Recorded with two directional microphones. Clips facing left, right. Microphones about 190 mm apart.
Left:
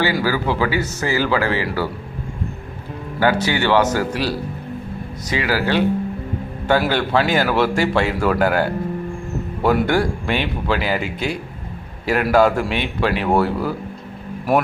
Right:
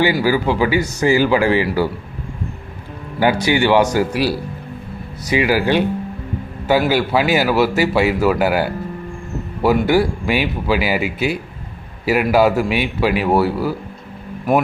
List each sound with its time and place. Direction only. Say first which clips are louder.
0.0 s a man's voice: right 4 dB; 15° right (ahead or behind)
3.2 s a man's voice: right 3 dB; 15° right (ahead or behind)